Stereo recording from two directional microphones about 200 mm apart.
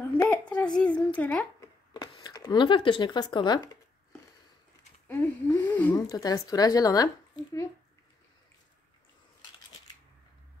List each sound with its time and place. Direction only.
0.2 s a sound: 5° left (ahead or behind)
2.2 s speech: 20° left (ahead or behind)
5.0 s speech: 10° left (ahead or behind)